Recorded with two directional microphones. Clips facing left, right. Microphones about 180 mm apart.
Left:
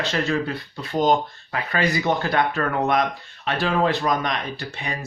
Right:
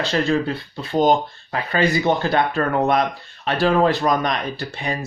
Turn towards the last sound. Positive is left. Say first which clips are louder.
# right 4 dB
turn(degrees=-35)  # may be behind; listen again after turning